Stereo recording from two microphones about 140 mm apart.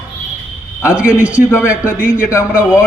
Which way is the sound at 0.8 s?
10° right (ahead or behind).